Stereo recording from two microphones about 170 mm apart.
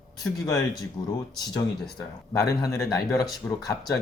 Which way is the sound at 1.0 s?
20° left (ahead or behind).